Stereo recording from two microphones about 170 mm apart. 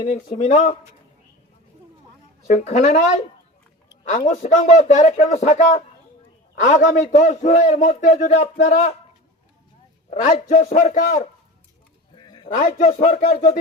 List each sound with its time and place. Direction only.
0.0 s a man's voice: 45° left (ahead or behind)
2.5 s a man's voice: 45° left (ahead or behind)
4.3 s a man's voice: 45° left (ahead or behind)
10.1 s a man's voice: 40° left (ahead or behind)
12.1 s sheep: 25° left (ahead or behind)
12.5 s a man's voice: 50° left (ahead or behind)